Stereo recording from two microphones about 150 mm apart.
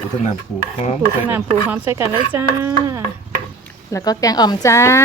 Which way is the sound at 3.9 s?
25° left (ahead or behind).